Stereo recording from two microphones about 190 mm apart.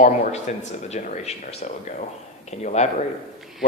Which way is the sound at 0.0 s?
40° left (ahead or behind).